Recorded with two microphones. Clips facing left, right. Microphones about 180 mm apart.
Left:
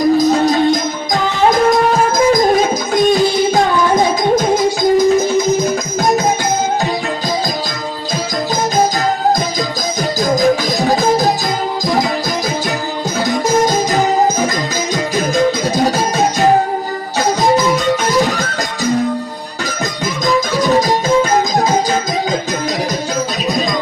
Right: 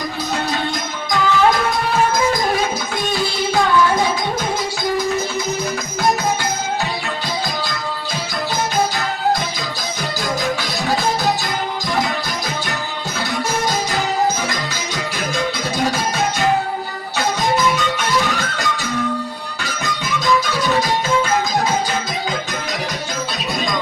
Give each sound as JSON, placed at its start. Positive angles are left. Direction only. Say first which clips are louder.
{"t": 0.3, "sound": "music", "louder": "left 11 dB", "side_deg": 40}
{"t": 10.2, "sound": "music", "louder": "left 10 dB", "side_deg": 40}
{"t": 13.1, "sound": "music", "louder": "left 8 dB", "side_deg": 40}
{"t": 15.7, "sound": "music", "louder": "left 5 dB", "side_deg": 40}